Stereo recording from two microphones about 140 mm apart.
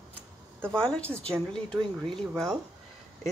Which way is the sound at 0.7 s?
5° left (ahead or behind).